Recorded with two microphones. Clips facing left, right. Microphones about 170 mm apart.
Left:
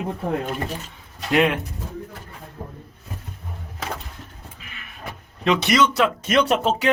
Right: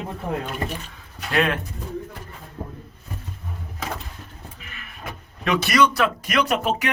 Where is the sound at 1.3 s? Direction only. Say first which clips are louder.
Left 3 dB; 15° left (ahead or behind).